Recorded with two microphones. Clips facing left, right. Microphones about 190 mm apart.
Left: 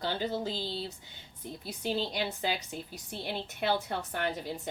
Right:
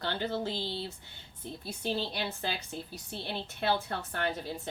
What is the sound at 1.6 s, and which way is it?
A woman's voice, 15° left (ahead or behind).